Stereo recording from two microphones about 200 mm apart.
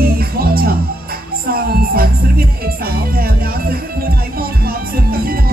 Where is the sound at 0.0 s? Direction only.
50° right (ahead or behind).